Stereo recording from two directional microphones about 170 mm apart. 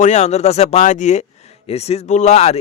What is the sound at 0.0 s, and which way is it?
Speech, 45° left (ahead or behind).